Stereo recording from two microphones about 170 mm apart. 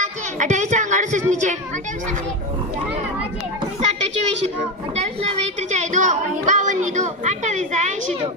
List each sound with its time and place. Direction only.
0.0 s speech: 45° right (ahead or behind)
4.9 s a woman's voice: 40° right (ahead or behind)